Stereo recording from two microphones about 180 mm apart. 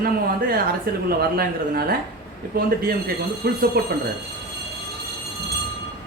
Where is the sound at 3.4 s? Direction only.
60° right (ahead or behind).